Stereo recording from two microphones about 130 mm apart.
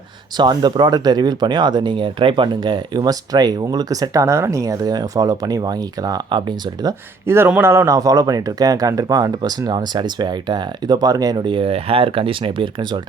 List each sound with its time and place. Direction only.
0.3 s speech: 35° right (ahead or behind)
6.8 s speech: 20° right (ahead or behind); by 13.0 s 40° right (ahead or behind)